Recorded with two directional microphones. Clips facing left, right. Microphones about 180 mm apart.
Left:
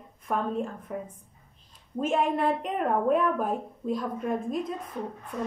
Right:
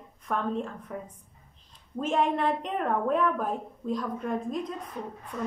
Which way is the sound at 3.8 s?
5° left (ahead or behind).